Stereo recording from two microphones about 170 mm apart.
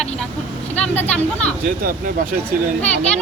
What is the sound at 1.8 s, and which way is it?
Speech, 60° right (ahead or behind).